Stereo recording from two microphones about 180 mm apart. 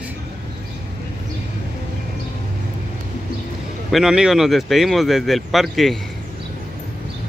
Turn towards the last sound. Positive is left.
turn(degrees=0)  # may be behind; listen again after turning